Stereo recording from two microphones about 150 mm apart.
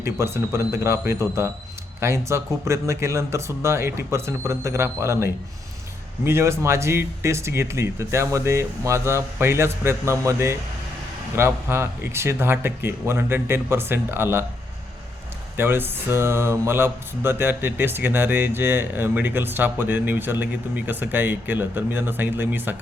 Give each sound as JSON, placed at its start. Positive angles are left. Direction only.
{"t": 0.0, "sound": "speech", "side_deg": -15}
{"t": 15.5, "sound": "speech", "side_deg": -15}